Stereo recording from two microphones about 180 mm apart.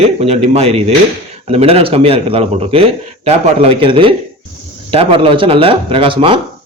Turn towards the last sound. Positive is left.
turn(degrees=-30)  # may be behind; listen again after turning